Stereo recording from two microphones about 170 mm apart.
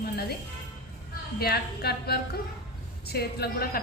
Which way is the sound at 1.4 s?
65° left (ahead or behind).